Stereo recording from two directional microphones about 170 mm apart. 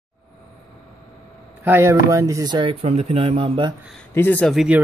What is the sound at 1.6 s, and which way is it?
Speech, 15° right (ahead or behind).